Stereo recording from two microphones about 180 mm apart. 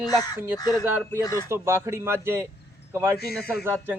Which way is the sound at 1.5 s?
15° right (ahead or behind).